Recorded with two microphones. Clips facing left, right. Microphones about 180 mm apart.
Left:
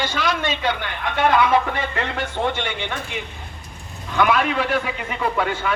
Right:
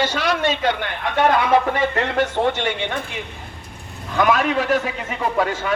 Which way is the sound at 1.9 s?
40° right (ahead or behind).